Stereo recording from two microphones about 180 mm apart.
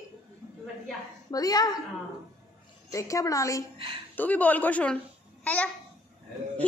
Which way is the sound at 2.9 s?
20° left (ahead or behind).